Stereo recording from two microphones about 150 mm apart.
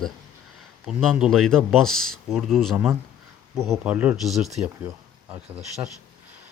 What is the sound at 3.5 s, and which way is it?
Speech, 20° right (ahead or behind).